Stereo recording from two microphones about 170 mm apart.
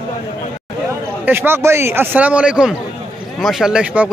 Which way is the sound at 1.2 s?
15° right (ahead or behind).